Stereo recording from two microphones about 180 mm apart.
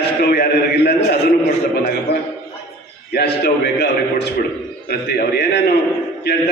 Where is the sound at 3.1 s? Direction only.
60° left (ahead or behind).